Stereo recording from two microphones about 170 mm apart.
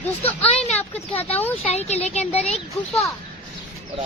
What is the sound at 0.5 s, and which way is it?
Speech, 35° left (ahead or behind).